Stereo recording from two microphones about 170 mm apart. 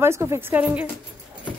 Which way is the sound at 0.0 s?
15° right (ahead or behind).